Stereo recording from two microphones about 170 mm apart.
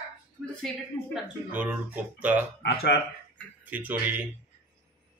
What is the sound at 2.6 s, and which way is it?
Speech, 80° left.